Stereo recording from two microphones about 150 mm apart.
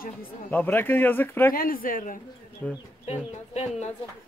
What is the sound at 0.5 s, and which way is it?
Speech, 15° left (ahead or behind).